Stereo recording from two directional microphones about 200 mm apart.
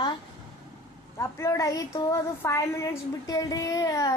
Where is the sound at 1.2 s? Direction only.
15° left (ahead or behind).